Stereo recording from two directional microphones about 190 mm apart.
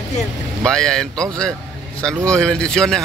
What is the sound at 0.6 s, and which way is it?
Speech, 5° left (ahead or behind).